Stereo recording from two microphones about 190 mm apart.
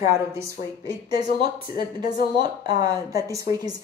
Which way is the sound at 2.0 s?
20° right (ahead or behind).